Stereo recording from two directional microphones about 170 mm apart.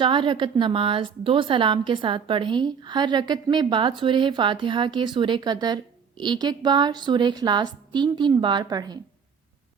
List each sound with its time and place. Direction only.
0.0 s a woman's voice: 30° right (ahead or behind)